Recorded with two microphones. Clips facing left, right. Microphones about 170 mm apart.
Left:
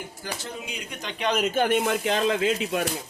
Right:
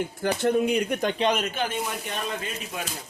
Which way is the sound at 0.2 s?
60° right (ahead or behind).